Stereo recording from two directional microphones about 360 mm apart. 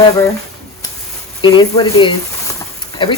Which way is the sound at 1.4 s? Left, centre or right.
Centre.